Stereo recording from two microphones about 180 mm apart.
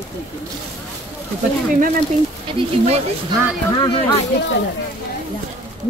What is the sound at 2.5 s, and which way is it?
Speech, 30° right (ahead or behind).